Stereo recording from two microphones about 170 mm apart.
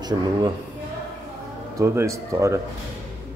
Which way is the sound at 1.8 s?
15° right (ahead or behind).